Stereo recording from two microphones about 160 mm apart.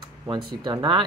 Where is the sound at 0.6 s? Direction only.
30° right (ahead or behind).